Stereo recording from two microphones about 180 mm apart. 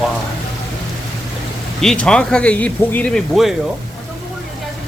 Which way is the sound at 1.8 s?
5° left (ahead or behind).